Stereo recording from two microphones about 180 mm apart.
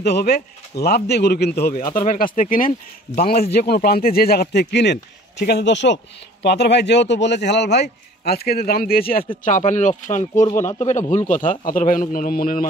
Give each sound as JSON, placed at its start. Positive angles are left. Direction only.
{"t": 0.0, "sound": "speech", "side_deg": 60}
{"t": 1.9, "sound": "speech", "side_deg": 50}
{"t": 6.4, "sound": "a man's voice", "side_deg": 65}
{"t": 9.4, "sound": "speech", "side_deg": 45}